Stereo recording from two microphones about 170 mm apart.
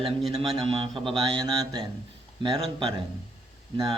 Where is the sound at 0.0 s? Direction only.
35° right (ahead or behind).